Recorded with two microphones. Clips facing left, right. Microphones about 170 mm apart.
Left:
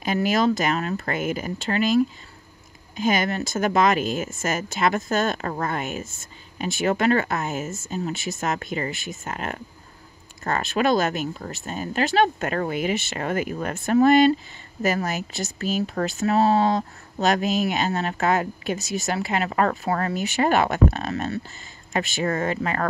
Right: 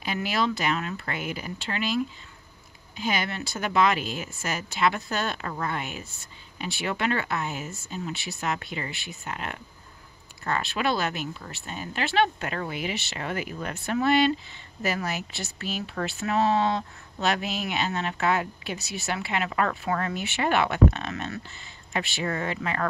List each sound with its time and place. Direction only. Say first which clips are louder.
0.0 s speech: left 6 dB; 45° left (ahead or behind)